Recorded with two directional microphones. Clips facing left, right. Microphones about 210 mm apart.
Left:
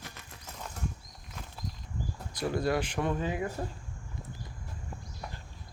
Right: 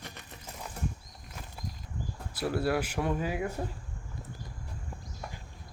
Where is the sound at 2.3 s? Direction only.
5° right (ahead or behind).